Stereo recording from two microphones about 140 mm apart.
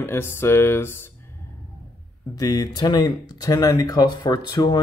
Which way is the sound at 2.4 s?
25° left (ahead or behind).